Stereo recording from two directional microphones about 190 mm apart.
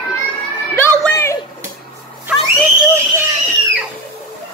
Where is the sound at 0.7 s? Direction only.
15° left (ahead or behind).